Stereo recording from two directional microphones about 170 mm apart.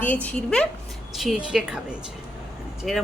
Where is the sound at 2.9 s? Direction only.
Centre (ahead or behind).